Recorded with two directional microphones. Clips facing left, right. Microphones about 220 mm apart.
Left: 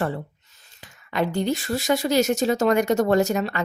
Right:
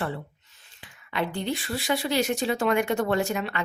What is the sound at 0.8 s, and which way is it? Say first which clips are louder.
A woman's voice: left 5 dB; 40° left (ahead or behind).